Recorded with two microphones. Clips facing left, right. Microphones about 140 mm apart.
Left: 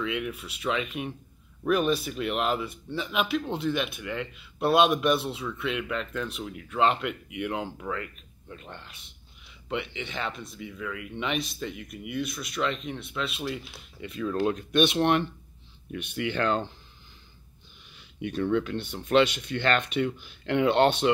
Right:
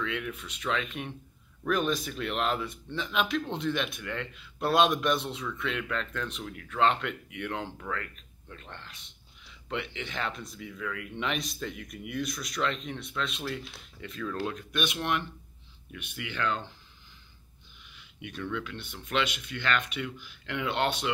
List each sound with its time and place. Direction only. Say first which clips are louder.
0.0 s speech: left 3 dB; 10° left (ahead or behind)
14.4 s speech: left 11 dB; 25° left (ahead or behind)
17.9 s speech: left 10 dB; 35° left (ahead or behind)